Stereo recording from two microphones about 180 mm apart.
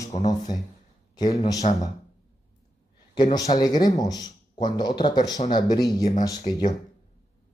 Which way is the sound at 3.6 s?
20° left (ahead or behind).